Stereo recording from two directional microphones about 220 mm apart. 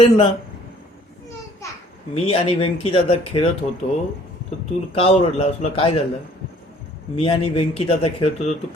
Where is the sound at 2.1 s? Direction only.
25° left (ahead or behind).